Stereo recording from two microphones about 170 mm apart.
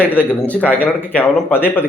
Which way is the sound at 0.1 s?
10° left (ahead or behind).